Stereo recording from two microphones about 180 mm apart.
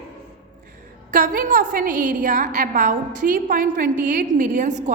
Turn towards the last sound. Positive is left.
turn(degrees=-45)  # may be behind; listen again after turning